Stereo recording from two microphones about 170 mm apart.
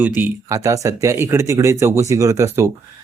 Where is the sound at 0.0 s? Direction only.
10° right (ahead or behind).